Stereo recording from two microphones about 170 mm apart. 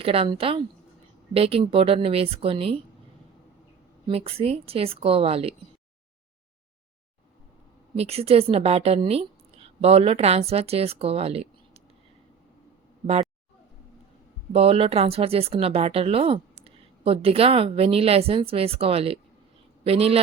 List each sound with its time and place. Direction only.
0.0 s speech: 35° right (ahead or behind)
4.0 s speech: 35° right (ahead or behind)
7.9 s a woman's voice: 35° right (ahead or behind)
14.5 s a man's voice: 35° right (ahead or behind)